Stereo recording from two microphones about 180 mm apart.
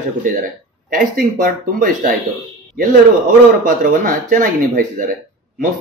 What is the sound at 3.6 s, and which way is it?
Speech, 50° right (ahead or behind).